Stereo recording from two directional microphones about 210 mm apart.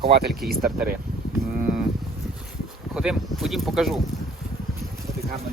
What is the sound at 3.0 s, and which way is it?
Speech, centre (ahead or behind).